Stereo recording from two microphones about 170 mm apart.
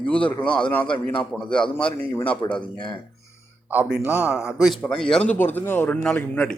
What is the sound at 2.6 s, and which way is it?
Speech, 25° left (ahead or behind).